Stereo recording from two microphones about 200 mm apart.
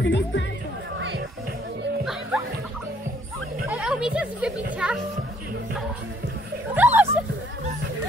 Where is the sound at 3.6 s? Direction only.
5° right (ahead or behind).